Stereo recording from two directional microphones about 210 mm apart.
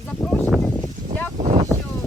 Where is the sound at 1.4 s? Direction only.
35° right (ahead or behind).